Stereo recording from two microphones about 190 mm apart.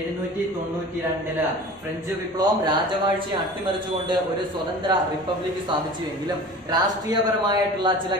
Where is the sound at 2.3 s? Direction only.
20° right (ahead or behind).